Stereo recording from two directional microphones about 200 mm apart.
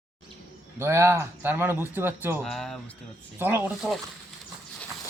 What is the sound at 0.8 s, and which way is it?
A man's voice, 10° right (ahead or behind).